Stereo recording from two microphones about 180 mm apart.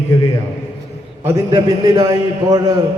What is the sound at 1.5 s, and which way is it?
A man's voice, 20° right (ahead or behind).